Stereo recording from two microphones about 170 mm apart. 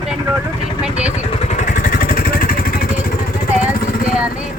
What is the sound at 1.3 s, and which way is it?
Vehicle, 40° left (ahead or behind).